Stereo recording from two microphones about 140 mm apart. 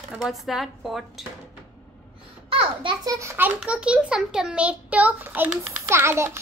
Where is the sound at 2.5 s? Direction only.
35° right (ahead or behind).